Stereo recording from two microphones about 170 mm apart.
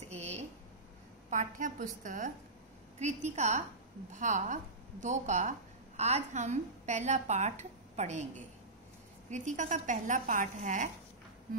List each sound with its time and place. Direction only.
0.1 s a sound: 40° right (ahead or behind)
1.3 s a woman's voice: 50° right (ahead or behind)
9.3 s a woman's voice: 45° right (ahead or behind)